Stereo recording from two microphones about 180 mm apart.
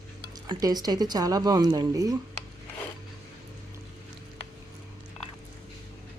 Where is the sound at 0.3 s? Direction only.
20° right (ahead or behind).